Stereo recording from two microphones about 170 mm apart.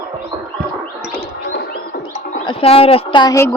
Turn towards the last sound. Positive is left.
turn(degrees=25)  # may be behind; listen again after turning